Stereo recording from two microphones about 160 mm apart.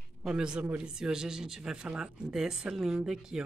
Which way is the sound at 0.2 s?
5° right (ahead or behind).